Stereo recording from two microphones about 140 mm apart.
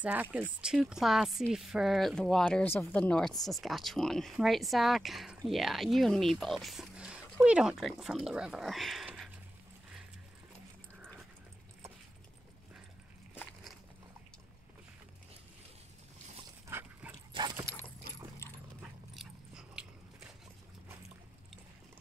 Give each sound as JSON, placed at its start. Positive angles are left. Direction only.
{"t": 0.0, "sound": "speech", "side_deg": -10}
{"t": 16.6, "sound": "dog", "side_deg": -20}
{"t": 17.3, "sound": "dog", "side_deg": -30}
{"t": 18.8, "sound": "dog", "side_deg": -5}